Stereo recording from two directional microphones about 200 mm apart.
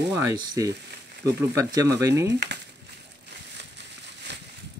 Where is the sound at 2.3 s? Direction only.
60° right (ahead or behind).